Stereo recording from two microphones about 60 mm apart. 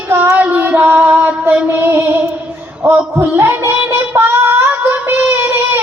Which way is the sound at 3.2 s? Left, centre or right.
Right.